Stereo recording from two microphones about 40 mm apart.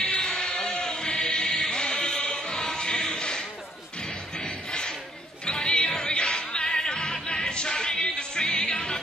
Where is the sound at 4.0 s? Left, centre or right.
Left.